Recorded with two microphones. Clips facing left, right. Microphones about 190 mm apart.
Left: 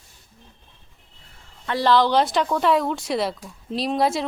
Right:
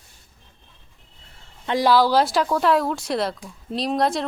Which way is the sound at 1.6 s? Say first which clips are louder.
Right 1 dB; 15° right (ahead or behind).